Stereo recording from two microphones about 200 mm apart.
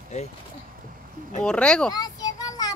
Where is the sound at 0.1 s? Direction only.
35° left (ahead or behind).